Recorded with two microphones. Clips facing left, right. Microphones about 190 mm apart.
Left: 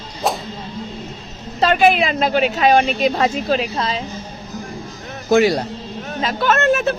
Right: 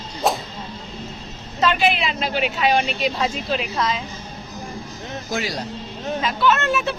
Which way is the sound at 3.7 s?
30° left (ahead or behind).